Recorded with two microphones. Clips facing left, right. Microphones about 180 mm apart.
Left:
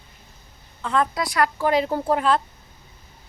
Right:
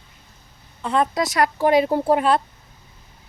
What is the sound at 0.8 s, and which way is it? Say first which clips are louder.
A woman's voice: right 2 dB; 20° right (ahead or behind).